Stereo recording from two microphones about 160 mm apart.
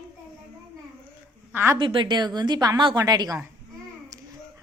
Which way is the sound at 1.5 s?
15° right (ahead or behind).